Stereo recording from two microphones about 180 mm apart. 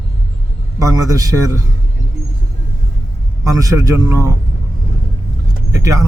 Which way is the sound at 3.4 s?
20° right (ahead or behind).